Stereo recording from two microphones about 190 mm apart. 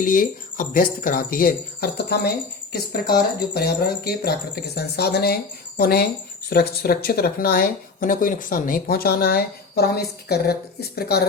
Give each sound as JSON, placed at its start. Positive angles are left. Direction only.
{"t": 0.0, "sound": "speech", "side_deg": 45}